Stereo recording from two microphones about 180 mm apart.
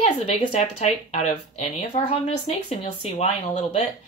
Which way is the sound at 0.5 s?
40° left (ahead or behind).